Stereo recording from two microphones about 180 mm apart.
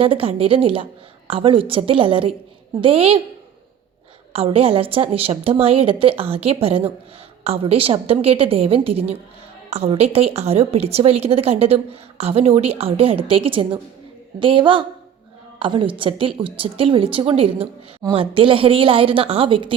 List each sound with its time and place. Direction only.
0.0 s a woman's voice: 30° right (ahead or behind)
4.3 s a woman's voice: 30° right (ahead or behind)